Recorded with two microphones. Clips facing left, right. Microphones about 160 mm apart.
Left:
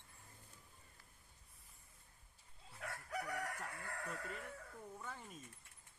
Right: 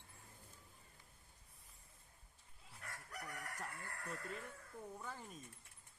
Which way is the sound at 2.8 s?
75° left (ahead or behind).